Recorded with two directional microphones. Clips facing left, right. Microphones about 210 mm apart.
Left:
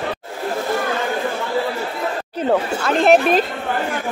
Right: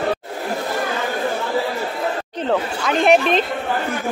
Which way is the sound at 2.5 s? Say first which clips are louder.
Left 2 dB; centre (ahead or behind).